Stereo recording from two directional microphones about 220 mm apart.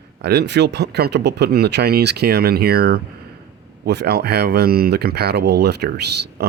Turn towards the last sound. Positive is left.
turn(degrees=-50)  # may be behind; listen again after turning